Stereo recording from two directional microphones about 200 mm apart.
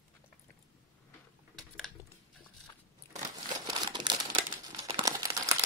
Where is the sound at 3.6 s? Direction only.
20° right (ahead or behind).